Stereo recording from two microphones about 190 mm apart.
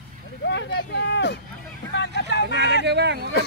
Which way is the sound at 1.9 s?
65° left (ahead or behind).